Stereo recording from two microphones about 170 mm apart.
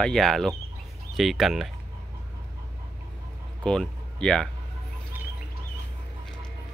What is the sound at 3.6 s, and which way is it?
Speech, 5° left (ahead or behind).